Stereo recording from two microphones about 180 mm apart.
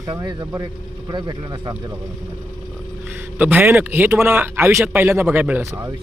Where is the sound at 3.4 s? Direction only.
10° right (ahead or behind).